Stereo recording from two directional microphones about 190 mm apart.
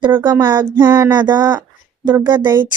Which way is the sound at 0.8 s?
10° right (ahead or behind).